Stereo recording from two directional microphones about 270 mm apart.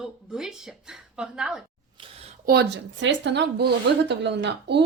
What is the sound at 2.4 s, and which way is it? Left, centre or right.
Speech, right.